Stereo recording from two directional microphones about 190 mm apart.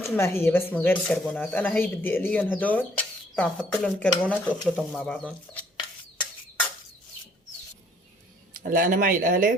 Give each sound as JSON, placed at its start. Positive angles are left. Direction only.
{"t": 0.0, "sound": "speech", "side_deg": 15}
{"t": 8.5, "sound": "speech", "side_deg": -45}